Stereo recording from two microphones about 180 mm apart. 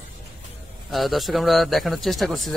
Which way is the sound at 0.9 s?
Centre (ahead or behind).